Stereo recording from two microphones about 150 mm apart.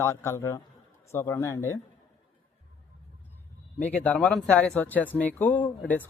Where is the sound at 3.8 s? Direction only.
10° left (ahead or behind).